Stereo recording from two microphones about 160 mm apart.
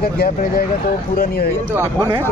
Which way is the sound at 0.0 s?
65° left (ahead or behind).